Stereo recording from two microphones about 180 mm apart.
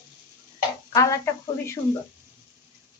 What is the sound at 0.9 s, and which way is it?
Speech, 15° left (ahead or behind).